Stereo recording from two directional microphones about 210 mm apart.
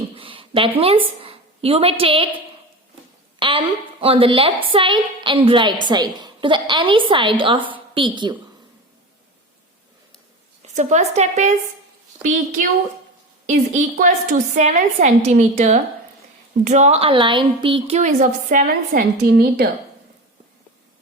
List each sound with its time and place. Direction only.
0.2 s a woman's voice: 25° right (ahead or behind)
3.3 s a sound: 25° right (ahead or behind)
4.0 s a woman's voice: 25° right (ahead or behind)
10.8 s a woman's voice: 35° right (ahead or behind)
13.5 s a woman's voice: 35° right (ahead or behind)